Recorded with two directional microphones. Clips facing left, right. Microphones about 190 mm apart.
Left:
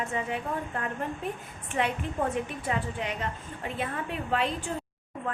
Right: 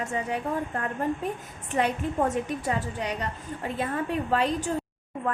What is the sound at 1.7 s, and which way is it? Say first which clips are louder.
A woman's voice: right 4 dB; 40° right (ahead or behind).